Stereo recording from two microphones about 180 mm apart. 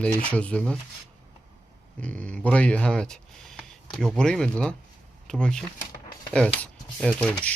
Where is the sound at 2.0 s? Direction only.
5° left (ahead or behind).